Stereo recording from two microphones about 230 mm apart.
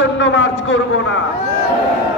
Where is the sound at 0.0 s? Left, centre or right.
Left.